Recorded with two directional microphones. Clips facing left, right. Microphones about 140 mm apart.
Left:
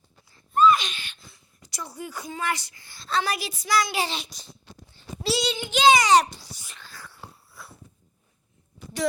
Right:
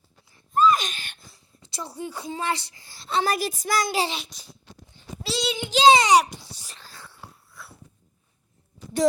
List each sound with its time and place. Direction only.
0.5 s a sound: 40° right (ahead or behind)
1.6 s a woman's voice: 30° right (ahead or behind)
3.2 s a woman's voice: 45° right (ahead or behind)
4.1 s a child's voice: centre (ahead or behind)
5.2 s child singing: centre (ahead or behind)
5.5 s a woman's voice: 25° right (ahead or behind)
6.1 s a child's voice: 15° right (ahead or behind)
6.5 s a sound: 30° right (ahead or behind)
7.6 s dog: 5° left (ahead or behind)